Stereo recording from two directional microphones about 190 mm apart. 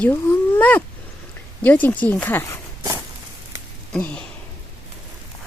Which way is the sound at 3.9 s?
5° left (ahead or behind).